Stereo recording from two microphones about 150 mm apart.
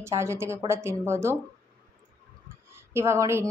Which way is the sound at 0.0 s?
20° right (ahead or behind).